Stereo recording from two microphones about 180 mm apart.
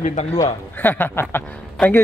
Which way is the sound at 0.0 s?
40° left (ahead or behind).